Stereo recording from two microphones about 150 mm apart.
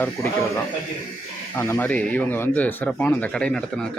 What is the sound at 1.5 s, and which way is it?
A man's voice, 15° left (ahead or behind).